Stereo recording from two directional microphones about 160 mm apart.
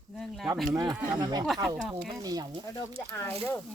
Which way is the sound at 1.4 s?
Centre (ahead or behind).